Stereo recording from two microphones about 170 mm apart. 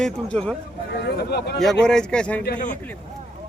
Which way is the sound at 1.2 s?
70° left (ahead or behind).